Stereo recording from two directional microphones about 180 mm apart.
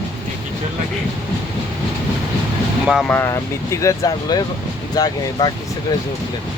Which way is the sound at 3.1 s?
15° left (ahead or behind).